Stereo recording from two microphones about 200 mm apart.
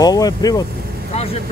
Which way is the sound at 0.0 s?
20° left (ahead or behind).